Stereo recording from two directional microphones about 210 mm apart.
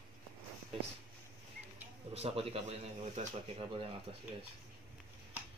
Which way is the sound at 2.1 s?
30° right (ahead or behind).